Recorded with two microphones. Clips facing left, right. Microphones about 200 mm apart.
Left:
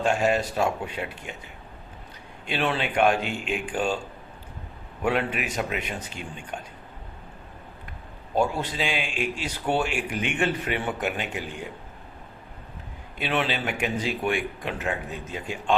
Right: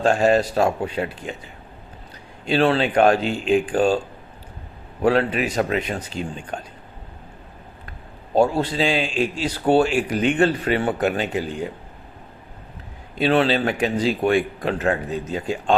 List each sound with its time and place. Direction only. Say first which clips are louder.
0.0 s speech: right 6 dB; 35° right (ahead or behind)
2.5 s speech: right 8 dB; 35° right (ahead or behind)
5.0 s speech: right 7 dB; 35° right (ahead or behind)
8.4 s speech: right 7 dB; 35° right (ahead or behind)
13.1 s speech: right 9 dB; 35° right (ahead or behind)